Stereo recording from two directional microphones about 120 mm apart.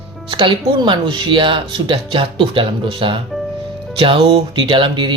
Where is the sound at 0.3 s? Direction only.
45° right (ahead or behind).